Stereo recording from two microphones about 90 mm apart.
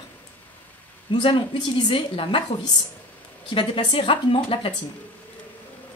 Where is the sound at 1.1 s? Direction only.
70° left (ahead or behind).